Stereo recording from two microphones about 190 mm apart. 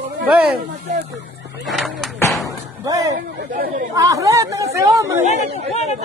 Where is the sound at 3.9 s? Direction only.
20° right (ahead or behind).